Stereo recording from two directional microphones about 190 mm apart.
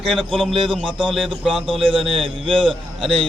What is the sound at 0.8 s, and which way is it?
Speech, 25° right (ahead or behind).